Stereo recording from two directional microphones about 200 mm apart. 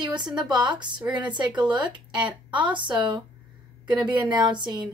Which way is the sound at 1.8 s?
20° right (ahead or behind).